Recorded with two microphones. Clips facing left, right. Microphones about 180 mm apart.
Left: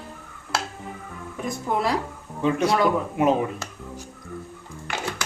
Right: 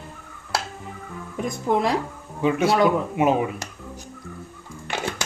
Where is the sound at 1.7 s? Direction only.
25° right (ahead or behind).